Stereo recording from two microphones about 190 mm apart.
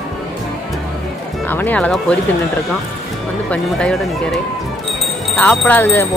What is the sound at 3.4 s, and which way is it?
Speech, 5° left (ahead or behind).